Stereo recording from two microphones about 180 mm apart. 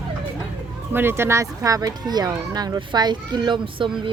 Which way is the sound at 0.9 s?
10° right (ahead or behind).